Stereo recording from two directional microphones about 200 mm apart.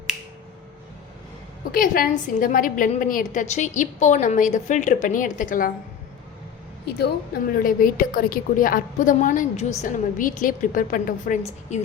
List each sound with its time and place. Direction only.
1.7 s a woman's voice: 45° left (ahead or behind)
6.8 s a woman's voice: 50° left (ahead or behind)